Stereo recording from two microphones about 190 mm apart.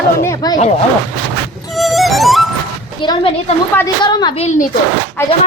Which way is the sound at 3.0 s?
25° left (ahead or behind).